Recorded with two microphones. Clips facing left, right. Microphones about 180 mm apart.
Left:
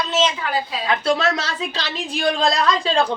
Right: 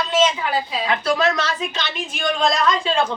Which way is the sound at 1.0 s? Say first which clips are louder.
Right 1 dB; 30° left (ahead or behind).